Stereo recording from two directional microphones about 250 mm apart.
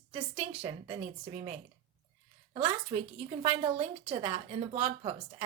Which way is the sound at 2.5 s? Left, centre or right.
Right.